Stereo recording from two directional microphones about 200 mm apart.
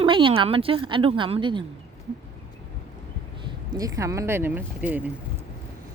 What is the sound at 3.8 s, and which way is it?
Speech, 15° right (ahead or behind).